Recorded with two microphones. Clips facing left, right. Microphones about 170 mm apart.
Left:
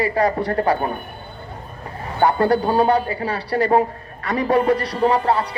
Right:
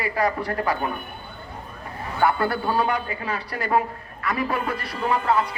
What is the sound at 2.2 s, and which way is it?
A man's voice, 35° left (ahead or behind).